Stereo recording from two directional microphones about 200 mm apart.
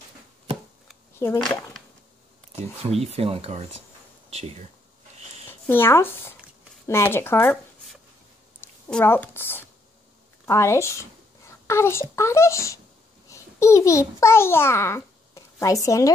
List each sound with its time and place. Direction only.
1.4 s speech: 5° left (ahead or behind)
2.8 s speech: 30° right (ahead or behind)
5.7 s a child's voice: 10° left (ahead or behind)
8.5 s a child's voice: 10° left (ahead or behind)